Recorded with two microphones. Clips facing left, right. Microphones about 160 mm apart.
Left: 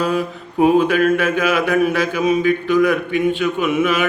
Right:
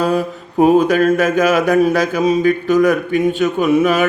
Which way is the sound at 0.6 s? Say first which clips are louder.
Right 2 dB; 40° right (ahead or behind).